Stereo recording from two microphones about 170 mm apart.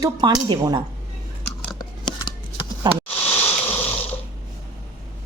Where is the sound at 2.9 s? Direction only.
25° right (ahead or behind).